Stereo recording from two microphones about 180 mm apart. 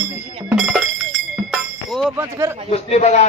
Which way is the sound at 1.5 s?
Centre (ahead or behind).